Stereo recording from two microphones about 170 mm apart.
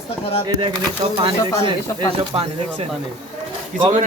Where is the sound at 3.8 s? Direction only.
30° right (ahead or behind).